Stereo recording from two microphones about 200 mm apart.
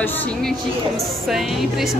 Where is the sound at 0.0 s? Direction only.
5° left (ahead or behind).